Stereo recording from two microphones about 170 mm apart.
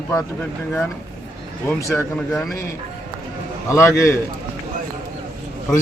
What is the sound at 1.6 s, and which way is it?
Speech, 15° left (ahead or behind).